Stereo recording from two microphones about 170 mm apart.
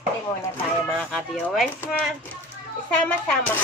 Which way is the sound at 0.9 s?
5° left (ahead or behind).